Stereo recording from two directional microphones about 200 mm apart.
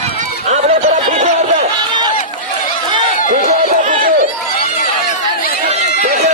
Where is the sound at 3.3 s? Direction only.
40° right (ahead or behind).